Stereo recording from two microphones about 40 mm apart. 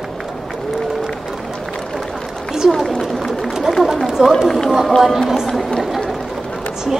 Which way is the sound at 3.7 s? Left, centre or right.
Centre.